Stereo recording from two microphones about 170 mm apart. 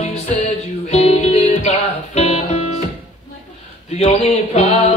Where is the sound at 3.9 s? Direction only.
40° left (ahead or behind).